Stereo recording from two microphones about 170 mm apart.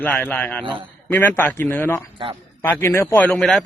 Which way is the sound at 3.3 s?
5° left (ahead or behind).